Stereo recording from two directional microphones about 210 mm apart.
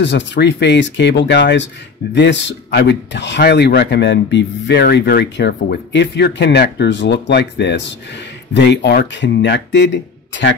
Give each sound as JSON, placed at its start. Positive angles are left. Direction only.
{"t": 0.0, "sound": "speech", "side_deg": 55}